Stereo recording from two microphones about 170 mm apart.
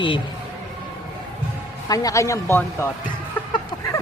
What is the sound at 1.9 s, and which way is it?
Speech, 20° left (ahead or behind).